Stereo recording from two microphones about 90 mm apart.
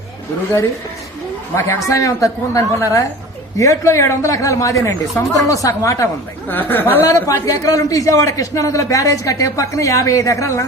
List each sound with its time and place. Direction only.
1.5 s a man's voice: 30° left (ahead or behind)
6.5 s speech: 20° left (ahead or behind)
7.1 s a man's voice: 40° left (ahead or behind)